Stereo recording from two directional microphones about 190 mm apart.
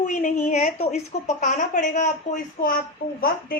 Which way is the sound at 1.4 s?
40° left (ahead or behind).